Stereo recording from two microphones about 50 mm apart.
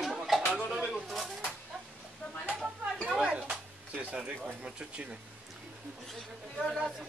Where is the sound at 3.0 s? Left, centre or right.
Centre.